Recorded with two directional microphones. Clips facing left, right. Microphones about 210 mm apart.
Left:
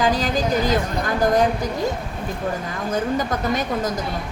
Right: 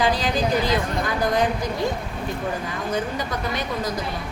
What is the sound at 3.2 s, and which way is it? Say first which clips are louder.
Speech: left 4 dB; 45° left (ahead or behind).